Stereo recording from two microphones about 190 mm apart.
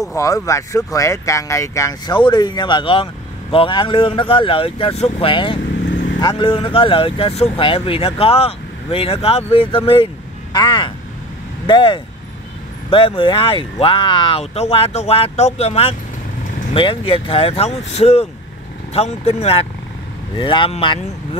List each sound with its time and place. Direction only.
0.0 s speech: 15° left (ahead or behind)